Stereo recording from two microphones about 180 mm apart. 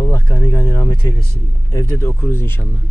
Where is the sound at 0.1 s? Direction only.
15° left (ahead or behind).